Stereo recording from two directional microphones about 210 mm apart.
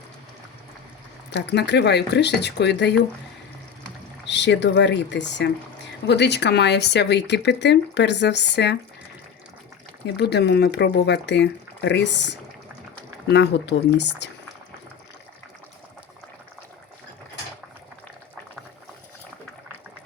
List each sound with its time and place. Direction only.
1.3 s speech: 55° left (ahead or behind)
4.3 s speech: 55° left (ahead or behind)
10.2 s speech: 50° left (ahead or behind)